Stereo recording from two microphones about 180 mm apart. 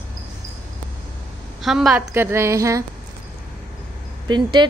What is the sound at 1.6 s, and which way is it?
Speech, centre (ahead or behind).